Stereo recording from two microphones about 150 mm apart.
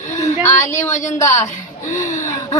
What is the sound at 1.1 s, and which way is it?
Speech, 20° left (ahead or behind).